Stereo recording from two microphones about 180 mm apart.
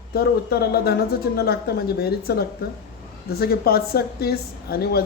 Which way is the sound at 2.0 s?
60° left (ahead or behind).